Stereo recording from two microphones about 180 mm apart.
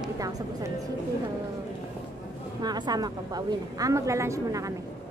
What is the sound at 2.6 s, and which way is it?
A woman's voice, 20° right (ahead or behind).